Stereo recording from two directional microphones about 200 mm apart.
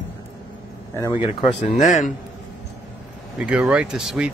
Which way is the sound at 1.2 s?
30° left (ahead or behind).